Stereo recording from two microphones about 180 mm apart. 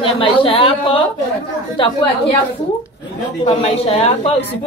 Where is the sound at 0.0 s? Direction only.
30° left (ahead or behind).